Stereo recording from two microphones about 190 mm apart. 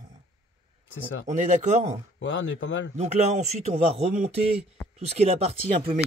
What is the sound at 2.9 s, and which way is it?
Speech, 35° right (ahead or behind).